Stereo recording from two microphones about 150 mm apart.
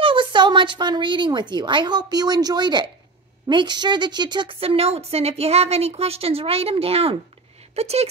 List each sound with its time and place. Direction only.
0.0 s a woman's voice: 35° right (ahead or behind)